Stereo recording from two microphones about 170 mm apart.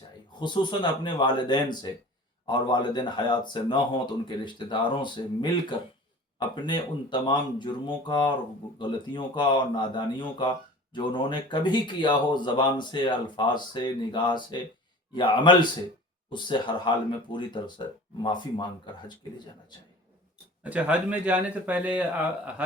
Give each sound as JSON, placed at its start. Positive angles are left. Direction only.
{"t": 0.3, "sound": "a man's voice", "side_deg": 25}
{"t": 20.7, "sound": "speech", "side_deg": -10}